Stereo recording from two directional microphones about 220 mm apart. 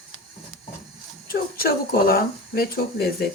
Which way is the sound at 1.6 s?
40° left (ahead or behind).